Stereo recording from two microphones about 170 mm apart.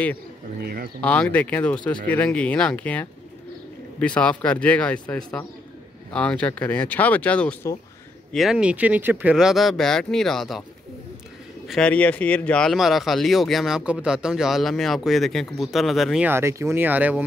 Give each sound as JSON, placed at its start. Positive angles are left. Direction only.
{"t": 0.6, "sound": "speech", "side_deg": -65}
{"t": 1.0, "sound": "speech", "side_deg": 5}
{"t": 11.6, "sound": "speech", "side_deg": 5}
{"t": 16.3, "sound": "speech", "side_deg": -15}